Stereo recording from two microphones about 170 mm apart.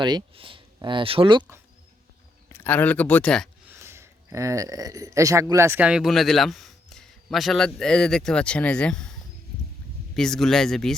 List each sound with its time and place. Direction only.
0.0 s speech: 25° right (ahead or behind)
2.5 s speech: 10° left (ahead or behind)
3.7 s speech: 15° right (ahead or behind); by 9.0 s 5° left (ahead or behind)
10.2 s speech: 5° left (ahead or behind)